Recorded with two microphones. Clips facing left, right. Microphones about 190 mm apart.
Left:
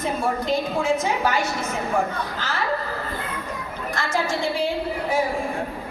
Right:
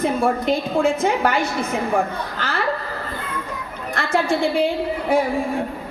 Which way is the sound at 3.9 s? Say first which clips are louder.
Right 5 dB; 60° right (ahead or behind).